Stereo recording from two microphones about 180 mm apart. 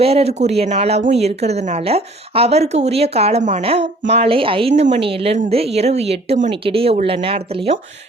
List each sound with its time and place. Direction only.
0.0 s speech: 35° right (ahead or behind)